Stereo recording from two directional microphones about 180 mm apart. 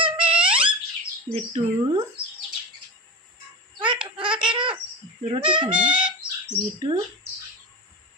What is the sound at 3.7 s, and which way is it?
Baby laughter, 25° right (ahead or behind).